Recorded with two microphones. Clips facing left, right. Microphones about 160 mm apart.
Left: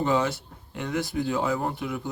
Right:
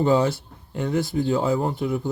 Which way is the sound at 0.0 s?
35° right (ahead or behind).